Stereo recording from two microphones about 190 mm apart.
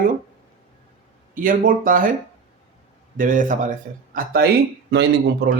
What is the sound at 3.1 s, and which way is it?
Speech, 45° right (ahead or behind).